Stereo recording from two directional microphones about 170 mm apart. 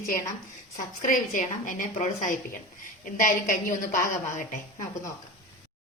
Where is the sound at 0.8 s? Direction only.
50° left (ahead or behind).